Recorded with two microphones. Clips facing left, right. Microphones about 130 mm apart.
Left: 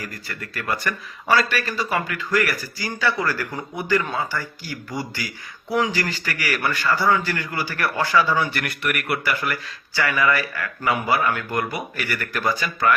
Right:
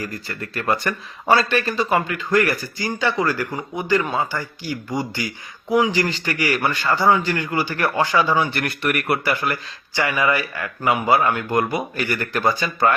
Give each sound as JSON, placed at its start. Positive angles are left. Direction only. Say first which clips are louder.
{"t": 0.0, "sound": "speech", "louder": "right 4 dB", "side_deg": -30}